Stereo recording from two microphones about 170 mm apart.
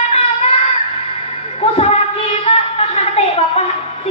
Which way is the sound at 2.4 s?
35° left (ahead or behind).